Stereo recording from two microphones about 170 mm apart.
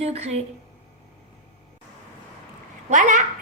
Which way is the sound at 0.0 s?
40° right (ahead or behind).